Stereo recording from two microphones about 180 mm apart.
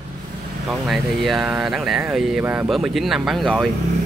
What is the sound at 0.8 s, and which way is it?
Speech, centre (ahead or behind).